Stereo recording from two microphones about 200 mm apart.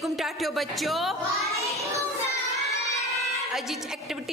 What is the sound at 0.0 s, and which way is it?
A woman's voice, centre (ahead or behind).